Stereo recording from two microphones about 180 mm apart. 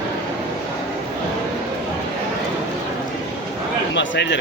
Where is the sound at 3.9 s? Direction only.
85° left.